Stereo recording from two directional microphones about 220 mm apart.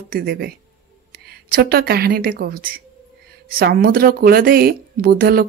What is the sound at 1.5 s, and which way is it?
Speech, 45° right (ahead or behind).